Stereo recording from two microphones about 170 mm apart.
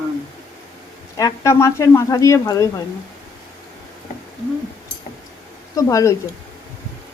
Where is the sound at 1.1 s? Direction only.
20° left (ahead or behind).